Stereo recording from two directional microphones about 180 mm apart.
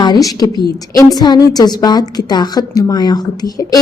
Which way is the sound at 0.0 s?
20° left (ahead or behind).